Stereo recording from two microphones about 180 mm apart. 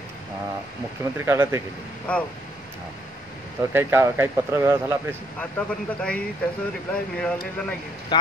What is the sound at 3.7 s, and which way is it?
Speech, 15° right (ahead or behind).